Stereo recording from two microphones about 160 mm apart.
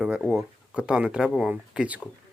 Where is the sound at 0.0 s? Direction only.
10° right (ahead or behind).